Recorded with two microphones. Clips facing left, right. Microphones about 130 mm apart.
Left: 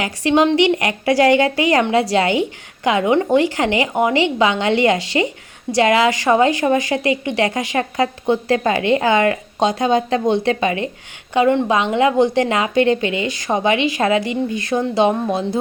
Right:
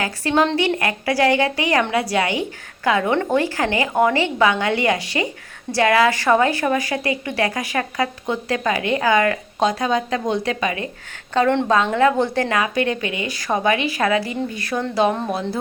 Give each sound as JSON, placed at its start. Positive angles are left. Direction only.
{"t": 0.0, "sound": "a woman's voice", "side_deg": 20}
{"t": 11.3, "sound": "a woman's voice", "side_deg": 10}